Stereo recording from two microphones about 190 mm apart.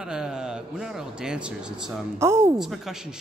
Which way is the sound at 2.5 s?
Centre (ahead or behind).